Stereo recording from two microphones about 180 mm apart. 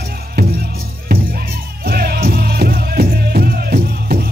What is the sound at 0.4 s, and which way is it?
Music, 60° right (ahead or behind).